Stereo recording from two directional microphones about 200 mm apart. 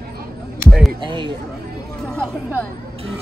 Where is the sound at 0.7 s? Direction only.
Centre (ahead or behind).